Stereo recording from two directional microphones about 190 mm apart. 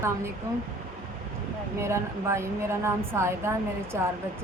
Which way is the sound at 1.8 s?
15° right (ahead or behind).